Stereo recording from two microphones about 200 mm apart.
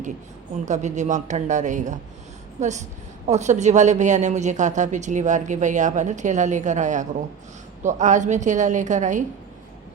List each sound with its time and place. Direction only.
0.6 s a woman's voice: 35° right (ahead or behind)